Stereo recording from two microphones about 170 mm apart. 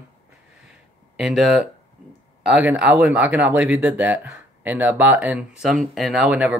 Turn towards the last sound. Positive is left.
turn(degrees=-10)  # may be behind; listen again after turning